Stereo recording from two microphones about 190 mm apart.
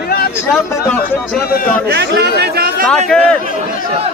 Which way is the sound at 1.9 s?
60° right (ahead or behind).